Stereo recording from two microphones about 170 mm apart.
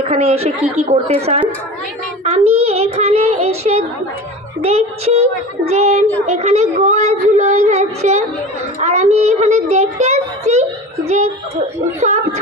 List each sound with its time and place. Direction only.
0.0 s a woman's voice: 40° right (ahead or behind)
2.2 s child singing: 40° right (ahead or behind)
4.6 s a woman's voice: 40° right (ahead or behind)
11.9 s speech: 40° right (ahead or behind)